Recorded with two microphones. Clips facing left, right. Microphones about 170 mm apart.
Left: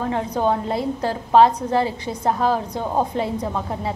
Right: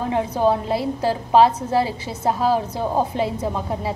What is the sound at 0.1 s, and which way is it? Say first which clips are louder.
A woman's voice: right 3 dB; 5° right (ahead or behind).